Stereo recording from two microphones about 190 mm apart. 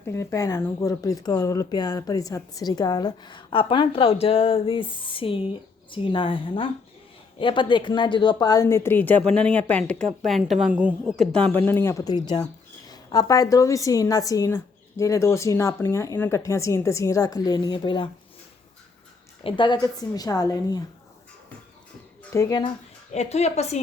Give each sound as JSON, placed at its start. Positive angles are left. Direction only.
{"t": 0.0, "sound": "a woman's voice", "side_deg": 15}
{"t": 19.4, "sound": "speech", "side_deg": 25}
{"t": 22.3, "sound": "speech", "side_deg": 20}
{"t": 23.1, "sound": "speech", "side_deg": 35}